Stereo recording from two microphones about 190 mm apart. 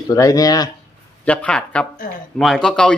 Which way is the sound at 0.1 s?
20° left (ahead or behind).